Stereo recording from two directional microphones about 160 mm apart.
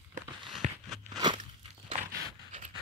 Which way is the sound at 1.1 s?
30° right (ahead or behind).